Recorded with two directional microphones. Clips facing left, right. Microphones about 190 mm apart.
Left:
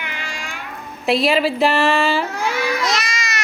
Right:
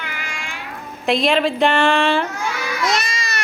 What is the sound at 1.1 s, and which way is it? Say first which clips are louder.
A woman's voice: even; 5° left (ahead or behind).